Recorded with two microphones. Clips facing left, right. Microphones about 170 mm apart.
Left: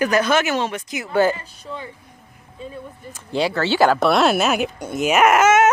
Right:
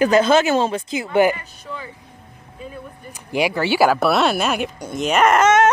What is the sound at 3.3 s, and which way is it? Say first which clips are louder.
Speech: right 1 dB; 15° right (ahead or behind).